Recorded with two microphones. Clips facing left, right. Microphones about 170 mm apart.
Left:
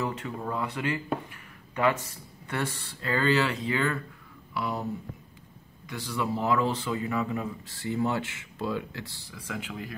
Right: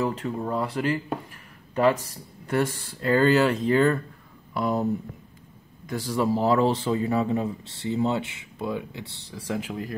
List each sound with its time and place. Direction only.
0.0 s speech: 35° right (ahead or behind)
5.9 s a man's voice: 40° right (ahead or behind); by 9.0 s 20° right (ahead or behind)
9.3 s speech: 35° right (ahead or behind)